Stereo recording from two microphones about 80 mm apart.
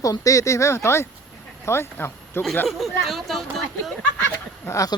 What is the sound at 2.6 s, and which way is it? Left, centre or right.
Speech, centre.